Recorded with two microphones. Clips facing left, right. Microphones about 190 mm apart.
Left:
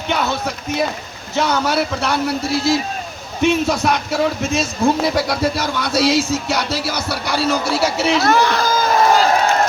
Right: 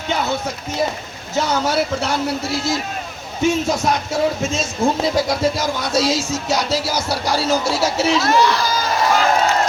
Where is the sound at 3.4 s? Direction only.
65° left (ahead or behind).